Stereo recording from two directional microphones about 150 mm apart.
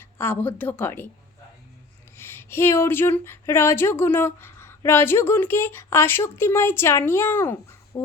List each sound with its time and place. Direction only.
0.0 s speech: 15° left (ahead or behind)
2.1 s speech: 15° left (ahead or behind)